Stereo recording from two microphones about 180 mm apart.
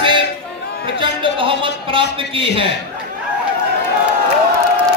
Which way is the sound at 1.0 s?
30° right (ahead or behind).